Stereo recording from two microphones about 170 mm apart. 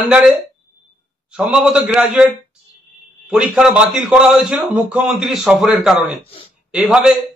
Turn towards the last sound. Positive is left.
turn(degrees=0)  # may be behind; listen again after turning